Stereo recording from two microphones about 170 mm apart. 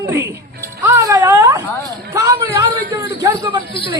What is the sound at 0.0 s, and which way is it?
Speech, 15° right (ahead or behind).